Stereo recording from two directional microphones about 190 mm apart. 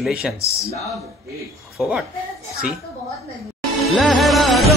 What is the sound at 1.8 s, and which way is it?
Speech, centre (ahead or behind).